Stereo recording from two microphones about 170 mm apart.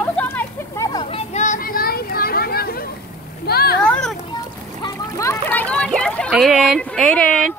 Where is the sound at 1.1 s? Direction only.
45° left (ahead or behind); by 3.8 s 65° left (ahead or behind).